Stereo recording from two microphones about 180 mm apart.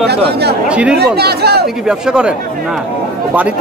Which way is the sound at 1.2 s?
60° right (ahead or behind).